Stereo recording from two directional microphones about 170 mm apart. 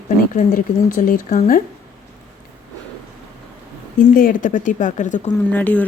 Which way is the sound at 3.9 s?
50° left (ahead or behind).